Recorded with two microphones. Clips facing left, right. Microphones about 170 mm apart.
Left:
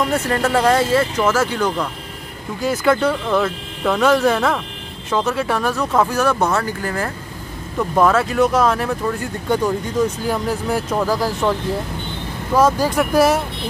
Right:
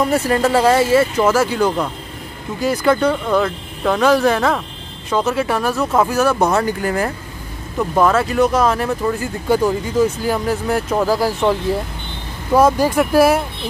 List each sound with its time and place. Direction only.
0.1 s speech: 10° right (ahead or behind)
2.6 s speech: centre (ahead or behind)
6.4 s speech: 15° right (ahead or behind)
7.9 s speech: centre (ahead or behind)
12.5 s speech: 10° right (ahead or behind)